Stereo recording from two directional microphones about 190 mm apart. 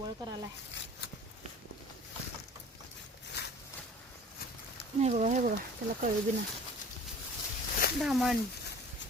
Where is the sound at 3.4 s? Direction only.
60° left (ahead or behind).